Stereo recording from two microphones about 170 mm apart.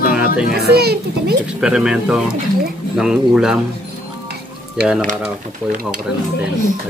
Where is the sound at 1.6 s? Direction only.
5° right (ahead or behind).